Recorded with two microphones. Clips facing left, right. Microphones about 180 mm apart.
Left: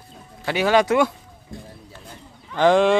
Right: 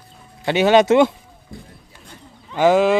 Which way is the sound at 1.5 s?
Centre (ahead or behind).